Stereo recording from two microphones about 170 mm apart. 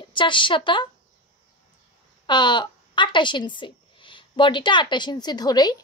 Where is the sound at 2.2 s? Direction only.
25° left (ahead or behind).